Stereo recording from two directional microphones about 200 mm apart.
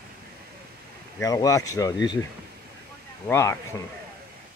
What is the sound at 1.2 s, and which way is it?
Speech, 15° left (ahead or behind).